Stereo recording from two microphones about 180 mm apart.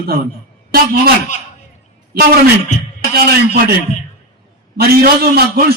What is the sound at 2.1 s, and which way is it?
A man's voice, 60° right (ahead or behind).